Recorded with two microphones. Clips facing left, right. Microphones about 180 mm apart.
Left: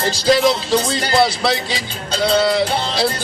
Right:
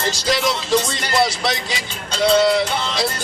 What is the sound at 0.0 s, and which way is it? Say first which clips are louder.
Speech: left 6 dB; 30° left (ahead or behind).